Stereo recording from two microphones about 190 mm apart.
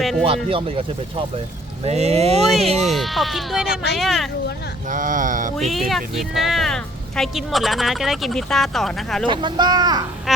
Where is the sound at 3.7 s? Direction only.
65° left (ahead or behind).